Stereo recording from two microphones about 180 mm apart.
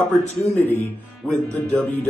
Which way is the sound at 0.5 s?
10° left (ahead or behind).